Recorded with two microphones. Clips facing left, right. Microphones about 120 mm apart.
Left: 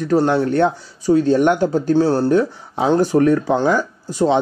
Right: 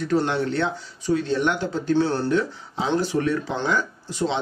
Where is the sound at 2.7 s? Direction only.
50° left (ahead or behind).